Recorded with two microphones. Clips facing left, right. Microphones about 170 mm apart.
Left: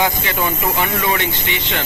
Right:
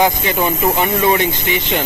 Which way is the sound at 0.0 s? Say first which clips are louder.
Right 4 dB; 20° right (ahead or behind).